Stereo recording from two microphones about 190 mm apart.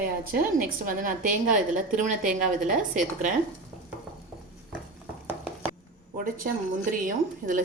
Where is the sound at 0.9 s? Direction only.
45° right (ahead or behind).